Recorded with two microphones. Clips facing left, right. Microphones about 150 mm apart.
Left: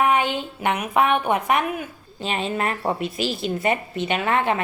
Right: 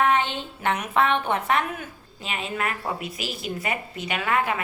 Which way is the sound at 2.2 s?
30° left (ahead or behind).